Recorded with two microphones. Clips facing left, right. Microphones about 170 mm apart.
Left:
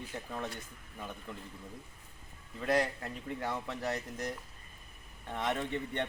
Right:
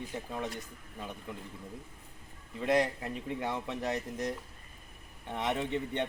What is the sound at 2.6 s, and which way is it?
Speech, 20° right (ahead or behind).